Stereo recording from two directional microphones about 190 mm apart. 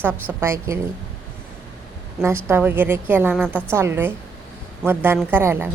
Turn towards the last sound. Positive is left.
turn(degrees=-10)  # may be behind; listen again after turning